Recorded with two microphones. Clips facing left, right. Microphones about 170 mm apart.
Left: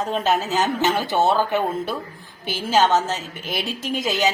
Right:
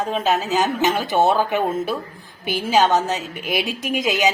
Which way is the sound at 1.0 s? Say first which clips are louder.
Right 3 dB; 20° right (ahead or behind).